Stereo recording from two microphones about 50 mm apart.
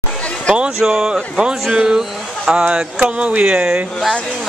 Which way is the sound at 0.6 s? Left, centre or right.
Centre.